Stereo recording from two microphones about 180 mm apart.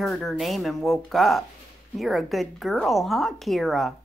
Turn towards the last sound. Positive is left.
turn(degrees=0)  # may be behind; listen again after turning